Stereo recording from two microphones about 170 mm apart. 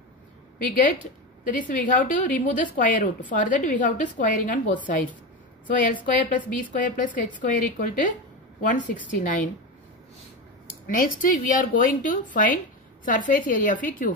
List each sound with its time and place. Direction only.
0.6 s a woman's voice: 50° left (ahead or behind)
5.7 s a woman's voice: 50° left (ahead or behind)
10.9 s a woman's voice: 55° left (ahead or behind)